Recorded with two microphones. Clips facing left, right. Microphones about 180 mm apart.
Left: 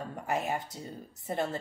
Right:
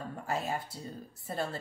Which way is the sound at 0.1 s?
20° left (ahead or behind).